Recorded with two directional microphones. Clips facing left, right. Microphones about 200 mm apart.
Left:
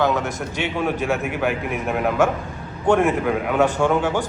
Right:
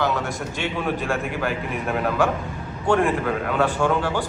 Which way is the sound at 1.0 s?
5° left (ahead or behind).